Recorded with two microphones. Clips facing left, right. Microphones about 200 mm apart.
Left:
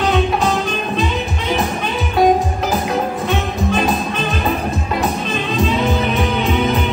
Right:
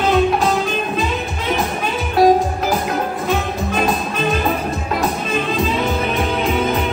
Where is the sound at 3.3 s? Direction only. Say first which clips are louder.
Left 1 dB; centre (ahead or behind).